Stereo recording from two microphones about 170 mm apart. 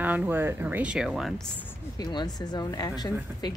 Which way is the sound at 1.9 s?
25° left (ahead or behind).